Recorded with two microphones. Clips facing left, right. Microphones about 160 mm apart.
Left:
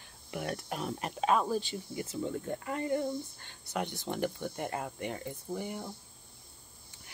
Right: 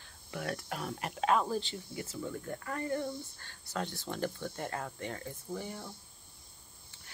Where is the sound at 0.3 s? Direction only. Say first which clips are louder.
Left 1 dB; 20° left (ahead or behind).